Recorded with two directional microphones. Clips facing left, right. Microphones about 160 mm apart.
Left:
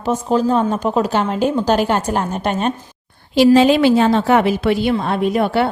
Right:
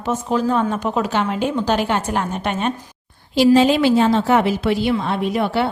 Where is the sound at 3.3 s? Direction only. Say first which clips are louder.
Left 2 dB; 70° left (ahead or behind).